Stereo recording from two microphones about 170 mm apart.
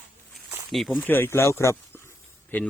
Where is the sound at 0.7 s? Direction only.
Centre (ahead or behind).